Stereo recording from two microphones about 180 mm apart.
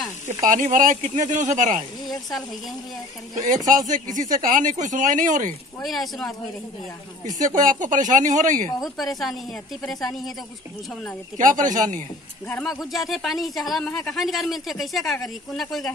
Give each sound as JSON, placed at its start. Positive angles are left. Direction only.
{"t": 0.3, "sound": "speech", "side_deg": -45}
{"t": 3.9, "sound": "speech", "side_deg": -45}
{"t": 5.8, "sound": "speech", "side_deg": 0}
{"t": 7.3, "sound": "speech", "side_deg": -45}
{"t": 8.7, "sound": "speech", "side_deg": 0}
{"t": 11.3, "sound": "speech", "side_deg": -45}
{"t": 12.4, "sound": "speech", "side_deg": 10}